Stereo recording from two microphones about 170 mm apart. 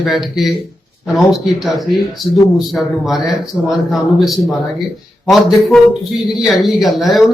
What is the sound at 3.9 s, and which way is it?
A man's voice, centre (ahead or behind).